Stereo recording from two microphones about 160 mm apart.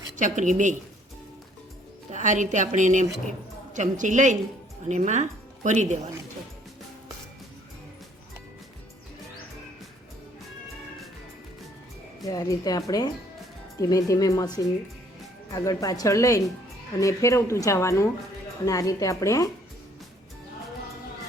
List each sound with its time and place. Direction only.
0.2 s a woman's voice: 50° right (ahead or behind)
2.0 s a woman's voice: 50° right (ahead or behind)
12.2 s speech: 20° left (ahead or behind)